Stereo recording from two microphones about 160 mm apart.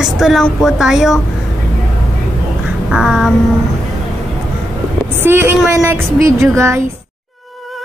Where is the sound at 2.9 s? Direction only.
5° right (ahead or behind).